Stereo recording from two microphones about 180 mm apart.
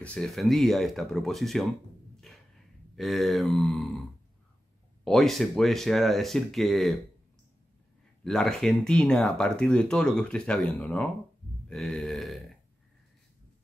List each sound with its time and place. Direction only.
0.0 s speech: 5° left (ahead or behind)
2.3 s a sound: centre (ahead or behind)
3.0 s speech: centre (ahead or behind)
5.0 s speech: centre (ahead or behind)
8.2 s speech: centre (ahead or behind)